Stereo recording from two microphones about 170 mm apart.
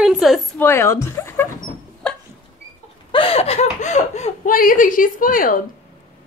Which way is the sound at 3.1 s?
30° left (ahead or behind).